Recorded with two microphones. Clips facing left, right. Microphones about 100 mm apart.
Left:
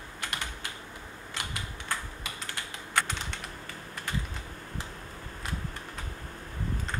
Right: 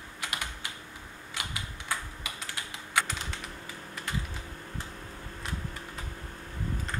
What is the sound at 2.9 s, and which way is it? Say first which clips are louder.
Typing: even; 5° right (ahead or behind).